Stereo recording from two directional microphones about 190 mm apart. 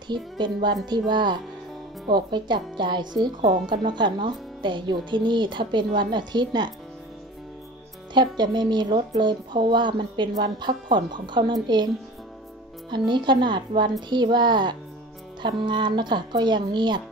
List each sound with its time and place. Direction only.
0.1 s speech: 25° right (ahead or behind)
8.1 s speech: 25° right (ahead or behind)
13.1 s speech: 25° right (ahead or behind)